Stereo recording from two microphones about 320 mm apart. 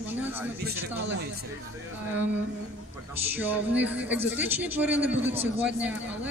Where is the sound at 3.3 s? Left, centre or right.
Centre.